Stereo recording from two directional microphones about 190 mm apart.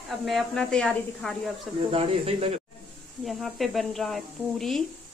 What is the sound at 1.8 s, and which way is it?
Speech, 30° right (ahead or behind).